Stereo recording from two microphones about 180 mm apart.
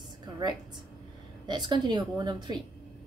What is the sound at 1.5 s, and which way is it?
Music, 25° right (ahead or behind).